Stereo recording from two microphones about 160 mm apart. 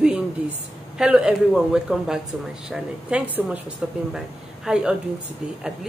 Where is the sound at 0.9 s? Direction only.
5° right (ahead or behind).